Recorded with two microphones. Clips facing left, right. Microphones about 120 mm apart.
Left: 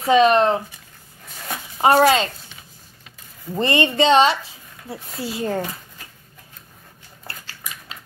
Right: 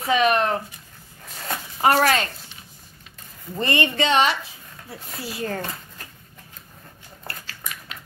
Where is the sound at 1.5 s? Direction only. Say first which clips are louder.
Left 3 dB; 25° left (ahead or behind).